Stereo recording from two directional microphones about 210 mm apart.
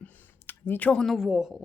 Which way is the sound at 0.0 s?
10° left (ahead or behind).